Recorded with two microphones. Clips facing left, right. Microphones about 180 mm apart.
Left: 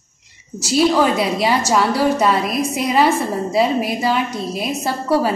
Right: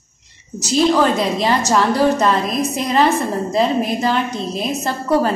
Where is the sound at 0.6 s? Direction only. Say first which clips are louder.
Even; 10° left (ahead or behind).